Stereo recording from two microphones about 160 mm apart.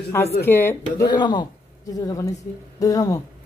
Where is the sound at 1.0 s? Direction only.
25° left (ahead or behind).